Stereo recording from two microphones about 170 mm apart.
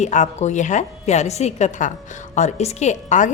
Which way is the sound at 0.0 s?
45° left (ahead or behind).